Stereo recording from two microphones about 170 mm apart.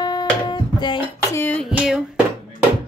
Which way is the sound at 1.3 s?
10° left (ahead or behind).